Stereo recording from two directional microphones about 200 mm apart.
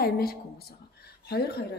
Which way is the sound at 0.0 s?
50° left (ahead or behind).